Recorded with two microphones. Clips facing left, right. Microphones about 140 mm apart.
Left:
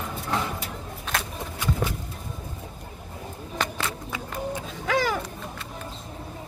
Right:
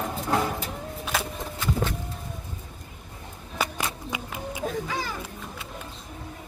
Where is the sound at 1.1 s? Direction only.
Centre (ahead or behind).